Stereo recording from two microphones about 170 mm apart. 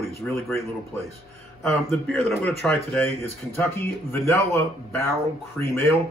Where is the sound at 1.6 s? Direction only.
5° left (ahead or behind).